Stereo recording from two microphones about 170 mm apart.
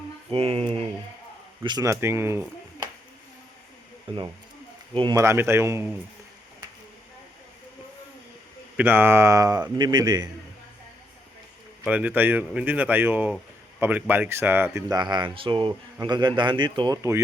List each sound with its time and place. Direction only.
0.3 s speech: 35° right (ahead or behind)
1.6 s speech: 20° right (ahead or behind)
4.1 s speech: 30° right (ahead or behind); by 5.8 s 15° right (ahead or behind)
8.7 s speech: 10° right (ahead or behind)
11.9 s speech: 10° right (ahead or behind)